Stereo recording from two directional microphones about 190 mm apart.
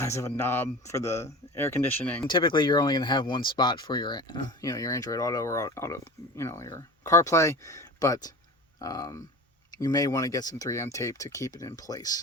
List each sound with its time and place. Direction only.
0.0 s speech: 15° left (ahead or behind)
2.2 s speech: 25° left (ahead or behind)